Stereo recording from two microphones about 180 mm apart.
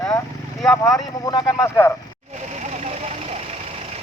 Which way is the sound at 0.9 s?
20° left (ahead or behind).